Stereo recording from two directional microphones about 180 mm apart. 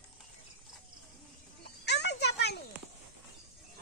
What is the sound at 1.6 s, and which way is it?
Children playing, 70° left (ahead or behind).